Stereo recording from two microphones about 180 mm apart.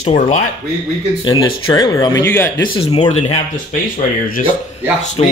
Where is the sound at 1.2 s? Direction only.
20° left (ahead or behind).